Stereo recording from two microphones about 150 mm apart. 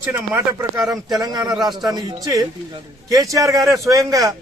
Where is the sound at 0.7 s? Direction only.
25° right (ahead or behind).